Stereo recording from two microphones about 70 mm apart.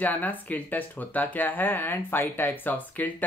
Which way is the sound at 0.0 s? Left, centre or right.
Left.